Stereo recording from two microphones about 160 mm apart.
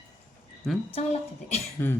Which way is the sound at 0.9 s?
40° left (ahead or behind).